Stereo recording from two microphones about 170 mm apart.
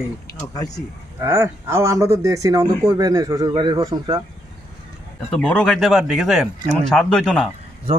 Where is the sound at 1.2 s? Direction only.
15° right (ahead or behind).